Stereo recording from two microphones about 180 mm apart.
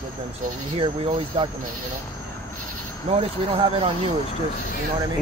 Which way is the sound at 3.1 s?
30° right (ahead or behind).